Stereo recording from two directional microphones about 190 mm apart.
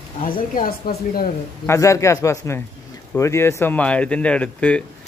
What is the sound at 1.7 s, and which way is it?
Speech, 15° left (ahead or behind).